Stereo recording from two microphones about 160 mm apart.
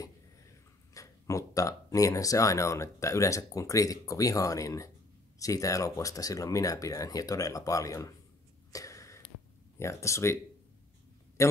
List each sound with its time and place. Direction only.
0.9 s speech: 20° left (ahead or behind)
8.7 s a sound: 20° left (ahead or behind)
9.8 s speech: 20° left (ahead or behind)